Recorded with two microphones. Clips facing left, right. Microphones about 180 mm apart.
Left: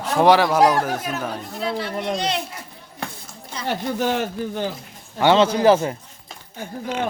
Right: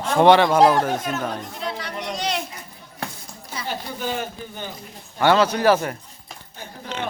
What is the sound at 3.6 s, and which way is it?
Speech, 70° left (ahead or behind).